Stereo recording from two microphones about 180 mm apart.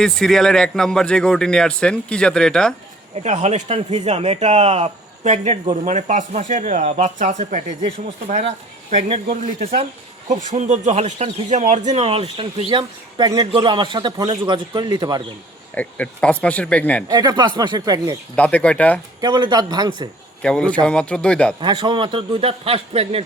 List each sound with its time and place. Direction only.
0.0 s speech: 5° left (ahead or behind)
3.2 s speech: 40° right (ahead or behind)
7.9 s speech: 30° right (ahead or behind)
15.7 s speech: 10° left (ahead or behind)
17.1 s speech: 20° right (ahead or behind)
18.3 s speech: 5° left (ahead or behind)
19.2 s speech: 25° right (ahead or behind)
20.4 s speech: 5° left (ahead or behind)
21.6 s speech: 25° right (ahead or behind)